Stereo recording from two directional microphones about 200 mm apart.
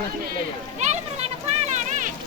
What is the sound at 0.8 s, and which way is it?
Children playing, 35° right (ahead or behind).